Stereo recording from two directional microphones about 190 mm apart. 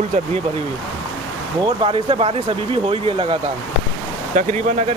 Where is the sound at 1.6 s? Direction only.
30° right (ahead or behind).